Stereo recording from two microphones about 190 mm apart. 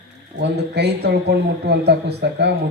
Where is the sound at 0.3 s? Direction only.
60° right (ahead or behind).